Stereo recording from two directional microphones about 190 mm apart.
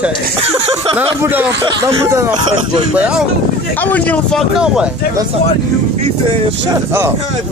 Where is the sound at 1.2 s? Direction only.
10° right (ahead or behind).